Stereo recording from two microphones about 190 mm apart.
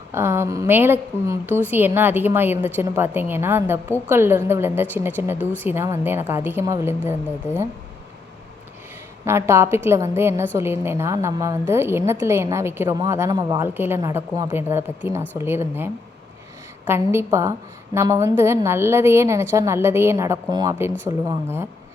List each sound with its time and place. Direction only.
0.1 s a woman's voice: 15° right (ahead or behind)
9.2 s a woman's voice: 15° right (ahead or behind)